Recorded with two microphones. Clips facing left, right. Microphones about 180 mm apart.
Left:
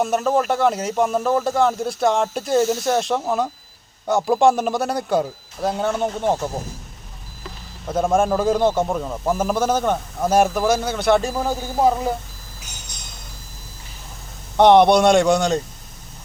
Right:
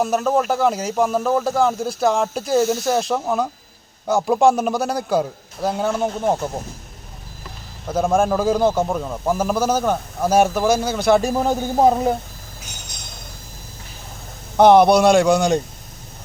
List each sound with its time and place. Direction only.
0.0 s speech: centre (ahead or behind)
7.9 s speech: centre (ahead or behind)
11.2 s speech: 15° right (ahead or behind)
14.5 s speech: 5° right (ahead or behind)